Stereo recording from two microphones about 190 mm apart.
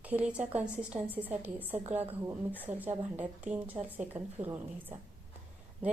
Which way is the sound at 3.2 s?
10° right (ahead or behind).